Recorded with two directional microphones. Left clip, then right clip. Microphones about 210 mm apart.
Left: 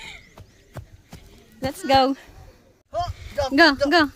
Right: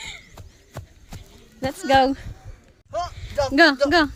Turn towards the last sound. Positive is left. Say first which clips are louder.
# even
turn(degrees=10)  # may be behind; listen again after turning